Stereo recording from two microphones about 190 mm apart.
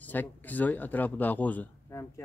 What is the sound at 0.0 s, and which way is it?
Speech, 10° left (ahead or behind).